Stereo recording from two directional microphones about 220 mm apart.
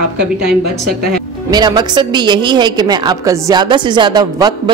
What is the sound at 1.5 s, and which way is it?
A woman's voice, 20° right (ahead or behind).